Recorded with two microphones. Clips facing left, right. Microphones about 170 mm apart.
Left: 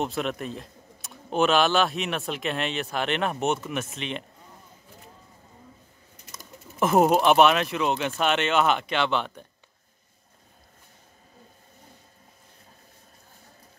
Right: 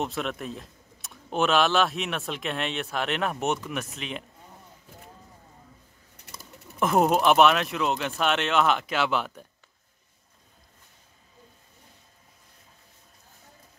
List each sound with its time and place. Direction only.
0.0 s speech: centre (ahead or behind)
6.3 s a sound: 65° right (ahead or behind)
6.8 s speech: centre (ahead or behind)